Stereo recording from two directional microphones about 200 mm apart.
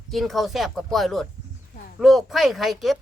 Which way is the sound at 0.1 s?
Centre (ahead or behind).